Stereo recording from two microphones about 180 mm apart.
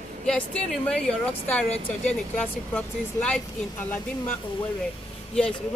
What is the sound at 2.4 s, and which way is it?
Speech, 5° left (ahead or behind).